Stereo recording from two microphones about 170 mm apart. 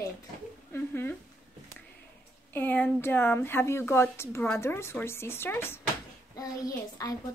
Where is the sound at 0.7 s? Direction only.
10° left (ahead or behind).